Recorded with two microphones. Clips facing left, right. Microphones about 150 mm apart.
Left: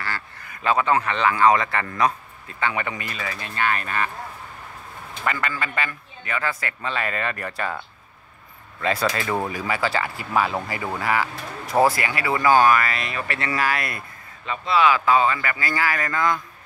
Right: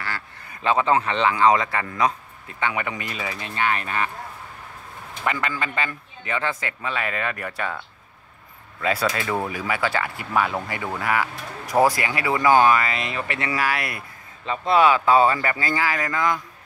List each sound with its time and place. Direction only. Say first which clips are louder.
0.5 s speech: right 1 dB; 25° right (ahead or behind)
5.2 s speech: right 1 dB; 15° right (ahead or behind)
6.8 s speech: left 1 dB; 5° right (ahead or behind)
8.8 s speech: even; 5° right (ahead or behind)
11.6 s speech: even; 15° right (ahead or behind)
14.6 s speech: right 2 dB; 50° right (ahead or behind)
14.9 s speech: right 2 dB; 30° right (ahead or behind)
15.7 s speech: left 3 dB; 15° right (ahead or behind)